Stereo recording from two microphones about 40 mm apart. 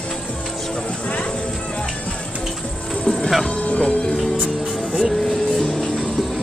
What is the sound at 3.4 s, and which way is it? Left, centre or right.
Speech, left.